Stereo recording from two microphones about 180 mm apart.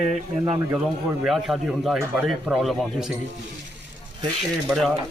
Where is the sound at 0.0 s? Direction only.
30° right (ahead or behind).